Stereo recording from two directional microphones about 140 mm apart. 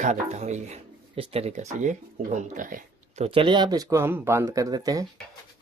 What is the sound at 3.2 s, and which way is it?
Speech, 40° right (ahead or behind).